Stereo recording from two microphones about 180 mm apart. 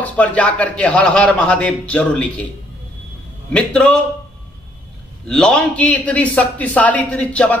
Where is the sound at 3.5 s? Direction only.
5° left (ahead or behind).